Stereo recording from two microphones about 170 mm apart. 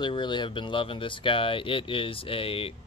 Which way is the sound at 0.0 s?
25° left (ahead or behind).